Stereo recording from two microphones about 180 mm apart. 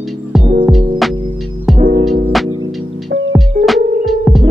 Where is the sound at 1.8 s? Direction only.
55° right (ahead or behind).